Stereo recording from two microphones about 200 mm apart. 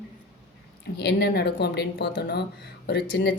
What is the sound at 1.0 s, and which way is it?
Speech, 55° left (ahead or behind).